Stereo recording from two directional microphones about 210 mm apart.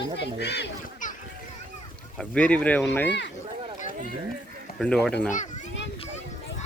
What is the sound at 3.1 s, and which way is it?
Speech, 55° left (ahead or behind).